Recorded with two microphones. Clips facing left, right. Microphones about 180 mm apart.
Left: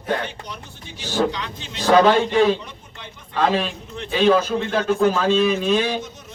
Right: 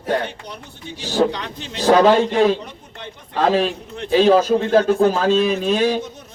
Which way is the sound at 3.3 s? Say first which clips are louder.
Right 3 dB; 40° right (ahead or behind).